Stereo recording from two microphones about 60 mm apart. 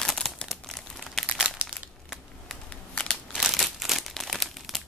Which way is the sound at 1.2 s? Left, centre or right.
Centre.